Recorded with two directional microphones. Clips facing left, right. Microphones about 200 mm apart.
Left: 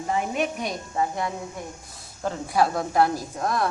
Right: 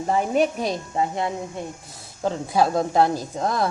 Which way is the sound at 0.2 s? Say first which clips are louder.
Right 5 dB; 30° right (ahead or behind).